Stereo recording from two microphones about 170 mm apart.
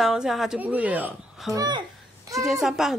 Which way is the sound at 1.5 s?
25° right (ahead or behind).